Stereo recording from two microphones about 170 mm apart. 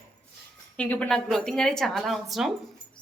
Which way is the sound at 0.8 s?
10° left (ahead or behind).